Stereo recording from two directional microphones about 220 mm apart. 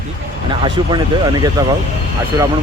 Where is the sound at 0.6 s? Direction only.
20° right (ahead or behind).